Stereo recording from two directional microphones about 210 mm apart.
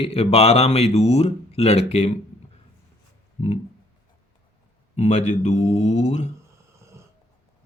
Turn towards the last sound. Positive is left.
turn(degrees=35)  # may be behind; listen again after turning